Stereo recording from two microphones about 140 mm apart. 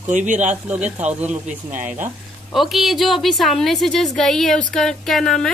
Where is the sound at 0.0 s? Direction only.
60° right (ahead or behind).